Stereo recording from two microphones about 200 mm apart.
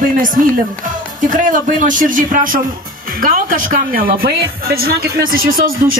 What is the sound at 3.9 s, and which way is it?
Speech, 45° right (ahead or behind).